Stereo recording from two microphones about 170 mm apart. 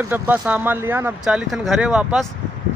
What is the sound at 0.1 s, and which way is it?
Speech, 10° right (ahead or behind).